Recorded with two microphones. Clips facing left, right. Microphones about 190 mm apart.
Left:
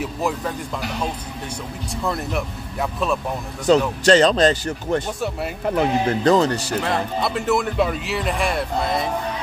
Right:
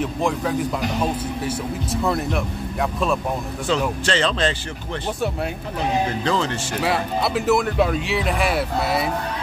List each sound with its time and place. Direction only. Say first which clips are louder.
0.0 s speech: right 2 dB; centre (ahead or behind)
1.9 s speech: right 2 dB; centre (ahead or behind)
3.7 s speech: left 7 dB; 45° left (ahead or behind)
6.8 s speech: right 4 dB; 5° right (ahead or behind)